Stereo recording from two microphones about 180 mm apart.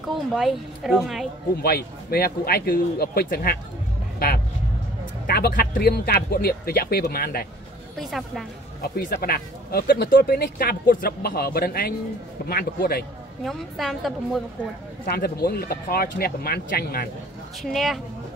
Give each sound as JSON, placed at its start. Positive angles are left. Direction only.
{"t": 0.3, "sound": "a woman's voice", "side_deg": 0}
{"t": 1.6, "sound": "speech", "side_deg": 60}
{"t": 5.2, "sound": "speech", "side_deg": 60}
{"t": 8.0, "sound": "a woman's voice", "side_deg": 0}
{"t": 8.8, "sound": "speech", "side_deg": 60}
{"t": 13.4, "sound": "a woman's voice", "side_deg": 0}
{"t": 15.0, "sound": "speech", "side_deg": 60}
{"t": 17.6, "sound": "a woman's voice", "side_deg": 0}